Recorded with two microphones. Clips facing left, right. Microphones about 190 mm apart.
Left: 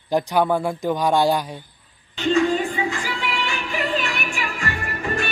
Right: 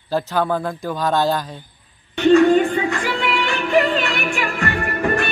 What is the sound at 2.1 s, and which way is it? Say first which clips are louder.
Music: right 7 dB; 65° right (ahead or behind).